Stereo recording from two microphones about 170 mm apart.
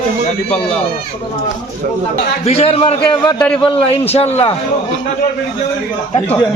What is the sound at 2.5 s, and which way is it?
A man's voice, 35° left (ahead or behind).